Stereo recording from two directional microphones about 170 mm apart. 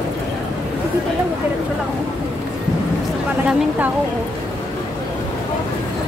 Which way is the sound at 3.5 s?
10° right (ahead or behind).